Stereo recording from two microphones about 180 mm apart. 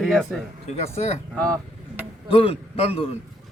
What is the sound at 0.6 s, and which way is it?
Speech, 35° left (ahead or behind).